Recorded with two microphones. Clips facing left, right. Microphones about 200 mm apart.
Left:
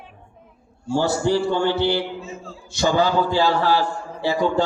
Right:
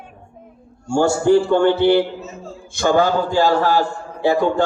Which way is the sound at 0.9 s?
50° right (ahead or behind).